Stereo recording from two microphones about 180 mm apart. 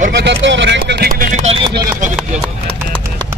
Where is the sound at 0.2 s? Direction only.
80° right; by 1.4 s 55° right (ahead or behind).